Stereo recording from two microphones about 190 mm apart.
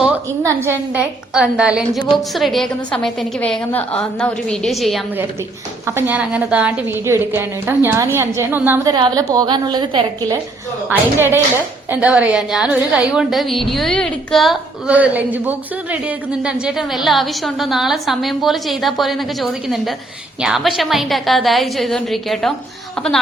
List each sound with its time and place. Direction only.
0.4 s a woman's voice: 10° right (ahead or behind)
5.8 s a woman's voice: 15° right (ahead or behind)
8.9 s a woman's voice: 20° right (ahead or behind)
10.8 s a woman's voice: 10° right (ahead or behind)